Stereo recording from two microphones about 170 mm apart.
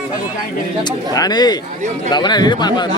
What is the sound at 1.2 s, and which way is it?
Speech, 25° left (ahead or behind).